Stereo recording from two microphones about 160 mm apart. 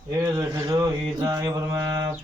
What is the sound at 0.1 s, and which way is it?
Mantra, 20° right (ahead or behind).